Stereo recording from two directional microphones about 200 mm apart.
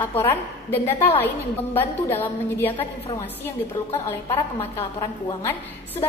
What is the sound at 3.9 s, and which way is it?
A woman's voice, 25° left (ahead or behind).